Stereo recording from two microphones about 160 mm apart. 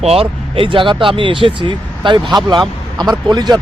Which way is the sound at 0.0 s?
35° right (ahead or behind).